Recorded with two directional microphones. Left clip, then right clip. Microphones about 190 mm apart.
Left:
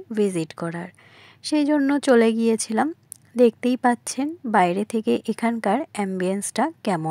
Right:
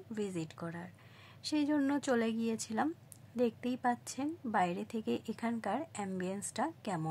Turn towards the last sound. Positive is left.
turn(degrees=40)  # may be behind; listen again after turning